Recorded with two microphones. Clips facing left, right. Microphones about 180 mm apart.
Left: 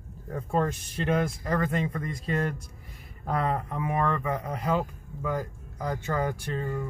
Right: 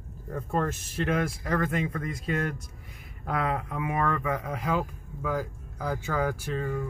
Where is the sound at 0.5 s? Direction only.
Centre (ahead or behind).